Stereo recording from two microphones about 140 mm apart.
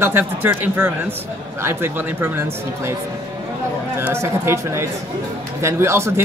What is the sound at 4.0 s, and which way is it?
Speech, 15° right (ahead or behind).